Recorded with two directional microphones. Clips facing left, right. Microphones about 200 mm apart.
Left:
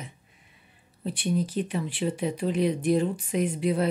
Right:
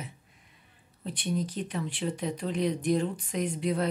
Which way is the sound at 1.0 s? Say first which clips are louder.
Left 4 dB; 10° left (ahead or behind).